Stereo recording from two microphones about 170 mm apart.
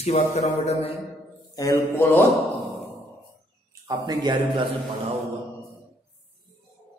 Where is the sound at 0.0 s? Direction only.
40° left (ahead or behind).